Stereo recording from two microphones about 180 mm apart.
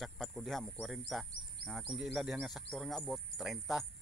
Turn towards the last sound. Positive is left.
turn(degrees=0)  # may be behind; listen again after turning